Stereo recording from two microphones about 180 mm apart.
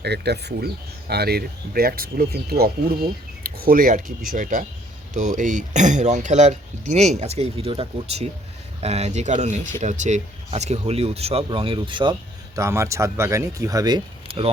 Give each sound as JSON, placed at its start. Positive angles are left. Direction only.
{"t": 0.0, "sound": "speech", "side_deg": -65}
{"t": 12.5, "sound": "speech", "side_deg": -15}